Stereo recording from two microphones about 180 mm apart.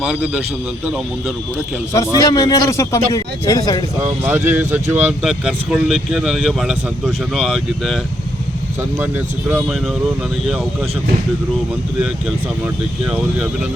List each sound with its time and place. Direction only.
0.0 s speech: 5° right (ahead or behind)
2.1 s a man's voice: 20° left (ahead or behind)
4.0 s speech: 15° right (ahead or behind)
9.0 s speech: 10° right (ahead or behind)